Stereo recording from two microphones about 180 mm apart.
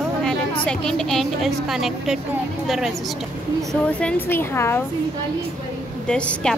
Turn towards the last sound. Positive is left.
turn(degrees=5)  # may be behind; listen again after turning